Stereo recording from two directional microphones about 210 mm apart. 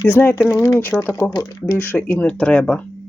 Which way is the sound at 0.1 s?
10° left (ahead or behind).